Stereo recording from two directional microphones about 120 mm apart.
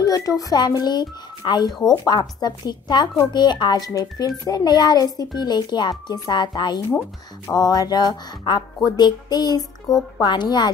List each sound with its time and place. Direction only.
0.0 s a child's voice: 30° left (ahead or behind)
8.7 s music: 30° left (ahead or behind)
10.2 s a child's voice: 40° left (ahead or behind)